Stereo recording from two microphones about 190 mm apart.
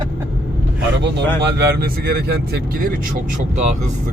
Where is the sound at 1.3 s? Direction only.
60° right (ahead or behind).